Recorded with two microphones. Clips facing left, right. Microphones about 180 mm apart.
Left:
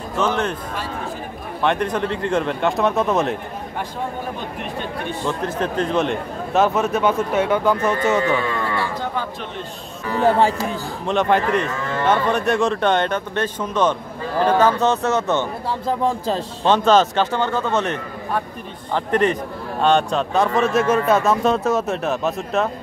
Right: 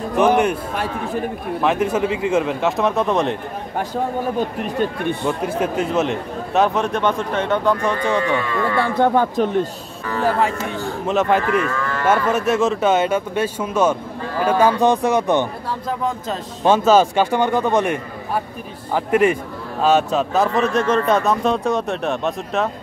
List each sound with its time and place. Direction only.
0.2 s a man's voice: 15° right (ahead or behind)
1.6 s a man's voice: 5° right (ahead or behind)
5.4 s a man's voice: 10° right (ahead or behind); by 8.4 s 5° left (ahead or behind)
8.7 s speech: 55° right (ahead or behind)
10.0 s speech: 15° left (ahead or behind)
11.1 s a man's voice: centre (ahead or behind)
11.6 s speech: 25° left (ahead or behind)
12.1 s speech: 5° right (ahead or behind)
16.0 s speech: 30° left (ahead or behind)
16.6 s a man's voice: 10° right (ahead or behind)